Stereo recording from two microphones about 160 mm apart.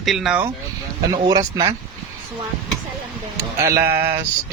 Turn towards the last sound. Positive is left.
turn(degrees=-15)  # may be behind; listen again after turning